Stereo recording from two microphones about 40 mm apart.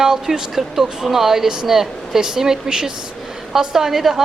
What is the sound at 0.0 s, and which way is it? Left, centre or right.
Speech, centre.